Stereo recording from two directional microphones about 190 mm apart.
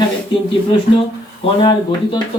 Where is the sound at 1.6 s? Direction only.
25° left (ahead or behind).